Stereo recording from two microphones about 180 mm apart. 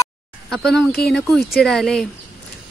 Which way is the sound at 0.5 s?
Centre (ahead or behind).